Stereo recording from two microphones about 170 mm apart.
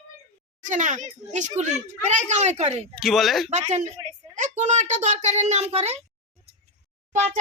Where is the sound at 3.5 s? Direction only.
45° right (ahead or behind).